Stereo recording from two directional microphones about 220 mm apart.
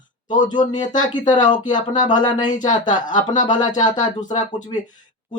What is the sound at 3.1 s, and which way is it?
Speech, 20° left (ahead or behind).